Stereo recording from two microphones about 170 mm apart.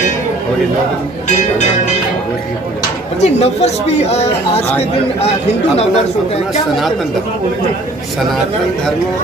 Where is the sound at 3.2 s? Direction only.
40° left (ahead or behind).